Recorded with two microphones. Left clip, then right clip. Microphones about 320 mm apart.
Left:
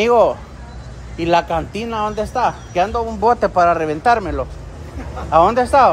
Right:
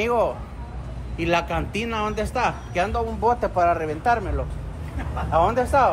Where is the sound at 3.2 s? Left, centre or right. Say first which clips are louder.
Left 7 dB; left.